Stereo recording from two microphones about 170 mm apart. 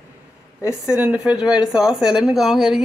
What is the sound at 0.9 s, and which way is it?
A woman's voice, 10° right (ahead or behind).